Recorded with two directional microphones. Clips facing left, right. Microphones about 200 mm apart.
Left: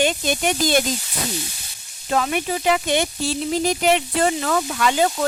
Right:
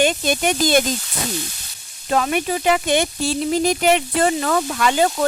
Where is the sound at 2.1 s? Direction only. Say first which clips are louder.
Right 2 dB; 50° right (ahead or behind).